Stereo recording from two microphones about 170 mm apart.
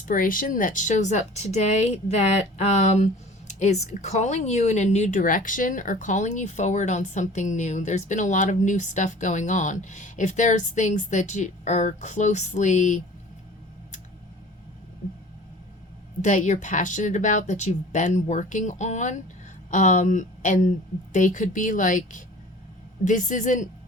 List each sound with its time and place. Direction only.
0.0 s speech: 55° left (ahead or behind)
16.2 s speech: 45° left (ahead or behind)